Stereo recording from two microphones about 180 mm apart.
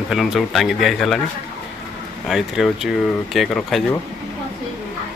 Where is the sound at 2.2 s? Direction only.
Centre (ahead or behind).